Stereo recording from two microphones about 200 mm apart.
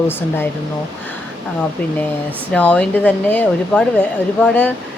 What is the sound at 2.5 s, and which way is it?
Speech, 5° left (ahead or behind).